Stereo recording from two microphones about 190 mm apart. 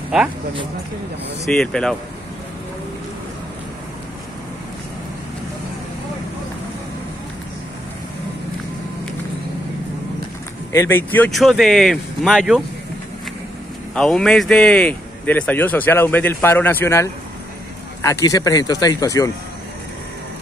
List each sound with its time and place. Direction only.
1.4 s speech: 5° left (ahead or behind)
10.7 s speech: 15° left (ahead or behind)
13.9 s speech: 5° left (ahead or behind)